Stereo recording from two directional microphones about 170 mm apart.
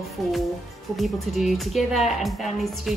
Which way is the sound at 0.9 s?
Centre (ahead or behind).